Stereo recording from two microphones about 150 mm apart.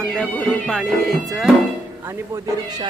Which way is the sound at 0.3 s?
Centre (ahead or behind).